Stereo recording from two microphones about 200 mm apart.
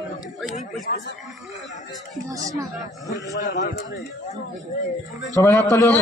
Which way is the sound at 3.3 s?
55° left (ahead or behind).